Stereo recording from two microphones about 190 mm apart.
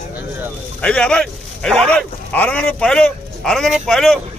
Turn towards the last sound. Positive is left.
turn(degrees=0)  # may be behind; listen again after turning